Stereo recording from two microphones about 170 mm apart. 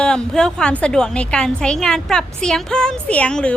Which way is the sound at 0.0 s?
5° left (ahead or behind).